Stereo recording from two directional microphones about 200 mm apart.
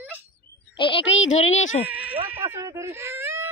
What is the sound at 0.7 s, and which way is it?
Speech, 25° left (ahead or behind).